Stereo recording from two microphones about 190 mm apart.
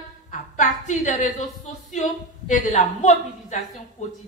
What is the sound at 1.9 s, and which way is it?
A woman's voice, 40° left (ahead or behind).